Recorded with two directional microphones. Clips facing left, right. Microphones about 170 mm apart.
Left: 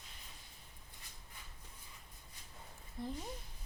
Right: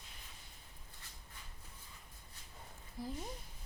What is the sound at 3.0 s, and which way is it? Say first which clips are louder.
Speech: left 1 dB; centre (ahead or behind).